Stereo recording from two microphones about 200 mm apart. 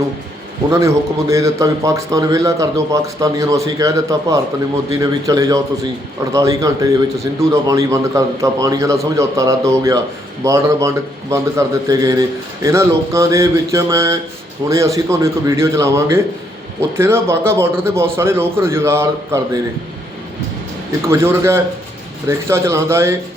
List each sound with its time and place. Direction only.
0.7 s a man's voice: 15° right (ahead or behind)
21.1 s a man's voice: 10° right (ahead or behind)